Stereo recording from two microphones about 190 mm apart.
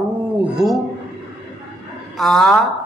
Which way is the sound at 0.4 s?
Centre (ahead or behind).